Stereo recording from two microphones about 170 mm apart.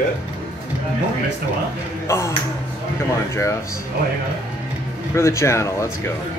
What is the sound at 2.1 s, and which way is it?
Speech, 15° left (ahead or behind).